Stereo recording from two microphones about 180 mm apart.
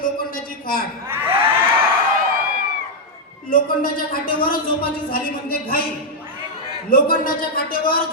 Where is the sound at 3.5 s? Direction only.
50° left (ahead or behind).